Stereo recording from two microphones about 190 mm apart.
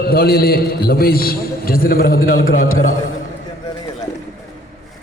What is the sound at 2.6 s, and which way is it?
Speech, 90° left.